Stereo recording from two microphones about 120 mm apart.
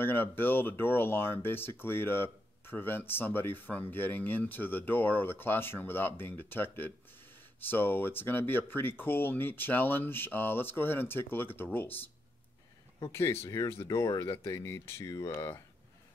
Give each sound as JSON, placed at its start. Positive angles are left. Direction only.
{"t": 0.0, "sound": "speech", "side_deg": 15}